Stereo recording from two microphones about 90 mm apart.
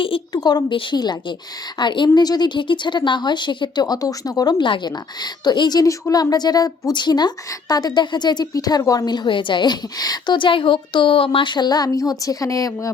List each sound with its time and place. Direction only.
0.3 s speech: 50° left (ahead or behind)
2.1 s speech: 50° left (ahead or behind)
10.3 s speech: 70° left (ahead or behind); by 12.9 s 40° left (ahead or behind)